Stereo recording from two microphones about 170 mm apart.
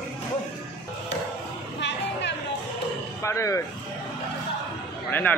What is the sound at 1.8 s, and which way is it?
Music, 90° left.